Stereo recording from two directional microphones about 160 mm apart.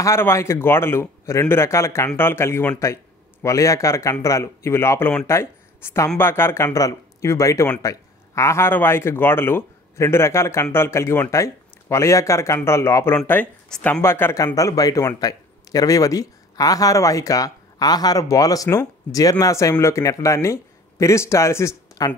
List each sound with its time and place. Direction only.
0.0 s speech: 15° left (ahead or behind)
14.0 s speech: 15° left (ahead or behind)